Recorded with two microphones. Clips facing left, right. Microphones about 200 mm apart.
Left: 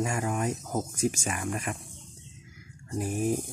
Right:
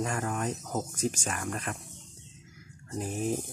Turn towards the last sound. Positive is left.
turn(degrees=10)  # may be behind; listen again after turning